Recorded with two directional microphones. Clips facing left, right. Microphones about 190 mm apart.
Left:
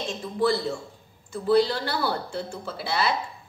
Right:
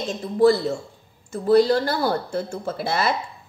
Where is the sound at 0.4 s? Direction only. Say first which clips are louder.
Right 7 dB; 45° right (ahead or behind).